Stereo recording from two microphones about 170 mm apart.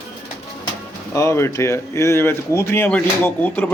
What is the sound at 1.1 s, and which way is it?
Speech, 15° left (ahead or behind).